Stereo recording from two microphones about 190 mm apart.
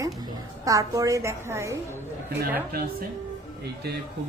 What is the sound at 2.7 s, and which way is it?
Speech, 50° right (ahead or behind).